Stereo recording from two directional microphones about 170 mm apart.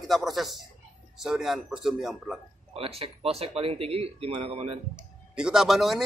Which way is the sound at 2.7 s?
35° right (ahead or behind).